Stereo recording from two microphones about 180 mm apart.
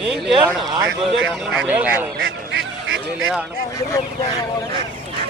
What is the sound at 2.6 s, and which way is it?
Honk, 90° right.